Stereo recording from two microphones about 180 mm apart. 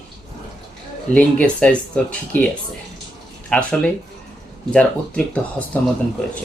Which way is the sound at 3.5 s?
5° left (ahead or behind).